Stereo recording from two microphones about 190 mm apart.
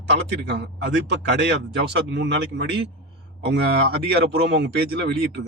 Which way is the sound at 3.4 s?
60° right (ahead or behind).